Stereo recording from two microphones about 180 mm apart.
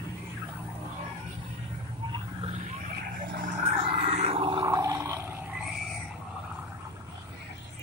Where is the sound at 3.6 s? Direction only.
35° right (ahead or behind); by 5.4 s 15° right (ahead or behind).